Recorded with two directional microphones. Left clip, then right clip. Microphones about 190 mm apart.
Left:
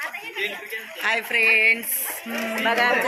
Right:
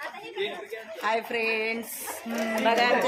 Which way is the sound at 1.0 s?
40° right (ahead or behind).